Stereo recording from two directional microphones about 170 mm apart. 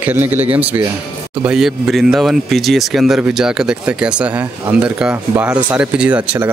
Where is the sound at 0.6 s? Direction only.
35° right (ahead or behind).